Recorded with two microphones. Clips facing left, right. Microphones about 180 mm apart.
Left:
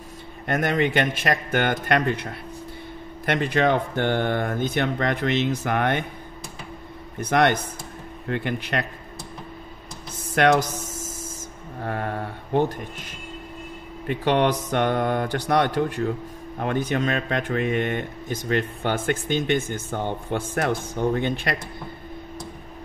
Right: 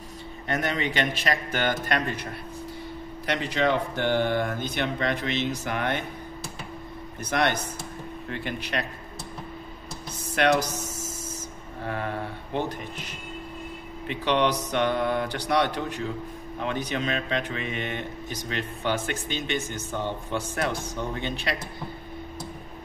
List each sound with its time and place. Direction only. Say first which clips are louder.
0.5 s speech: left 5 dB; 55° left (ahead or behind)
3.3 s speech: left 4 dB; 55° left (ahead or behind)
7.2 s speech: left 5 dB; 55° left (ahead or behind)
10.3 s speech: left 4 dB; 50° left (ahead or behind)
11.8 s a sound: left 3 dB; 50° left (ahead or behind)
14.0 s speech: left 3 dB; 50° left (ahead or behind)